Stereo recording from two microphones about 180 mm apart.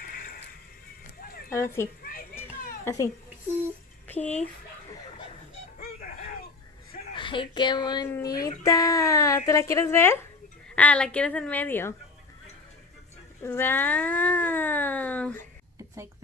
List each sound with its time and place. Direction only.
0.0 s music: 55° left (ahead or behind)
1.5 s a child's voice: 15° left (ahead or behind)
4.1 s speech: 5° left (ahead or behind)
7.2 s speech: 25° left (ahead or behind); by 11.9 s 10° left (ahead or behind)
13.4 s speech: 10° left (ahead or behind)